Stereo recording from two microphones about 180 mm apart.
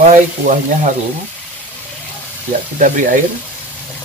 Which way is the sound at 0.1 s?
45° right (ahead or behind).